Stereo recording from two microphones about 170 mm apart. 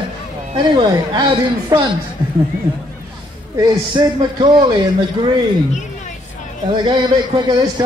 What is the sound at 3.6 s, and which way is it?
A man's voice, 25° right (ahead or behind).